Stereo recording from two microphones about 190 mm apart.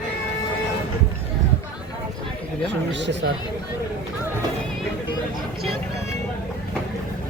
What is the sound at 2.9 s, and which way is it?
Speech, 70° right (ahead or behind).